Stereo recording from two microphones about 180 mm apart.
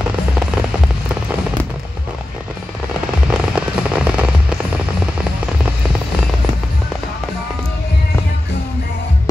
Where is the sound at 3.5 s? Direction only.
5° right (ahead or behind).